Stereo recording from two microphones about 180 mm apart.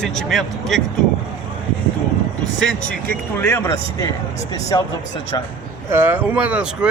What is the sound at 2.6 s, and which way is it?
A man's voice, 5° left (ahead or behind).